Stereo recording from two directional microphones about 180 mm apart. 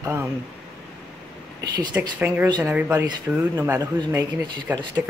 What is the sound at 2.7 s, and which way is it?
Speech, 10° right (ahead or behind).